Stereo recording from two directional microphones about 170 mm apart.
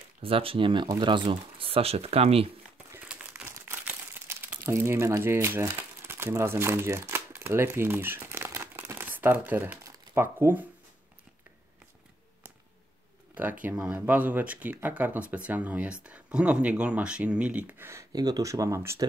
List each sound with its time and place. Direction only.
0.2 s speech: 35° right (ahead or behind)
2.9 s crumpling: 10° right (ahead or behind)
4.6 s speech: 15° right (ahead or behind)
13.3 s speech: 10° right (ahead or behind)